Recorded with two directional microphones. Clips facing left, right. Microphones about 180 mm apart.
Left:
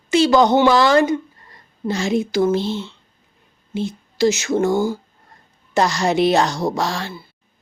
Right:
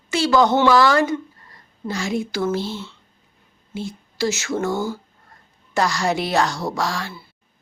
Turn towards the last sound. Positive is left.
turn(degrees=25)  # may be behind; listen again after turning